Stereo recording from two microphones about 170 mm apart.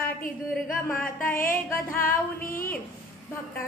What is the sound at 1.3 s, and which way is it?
Music, 55° left (ahead or behind).